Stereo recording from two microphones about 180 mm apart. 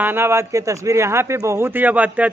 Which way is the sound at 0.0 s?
15° right (ahead or behind).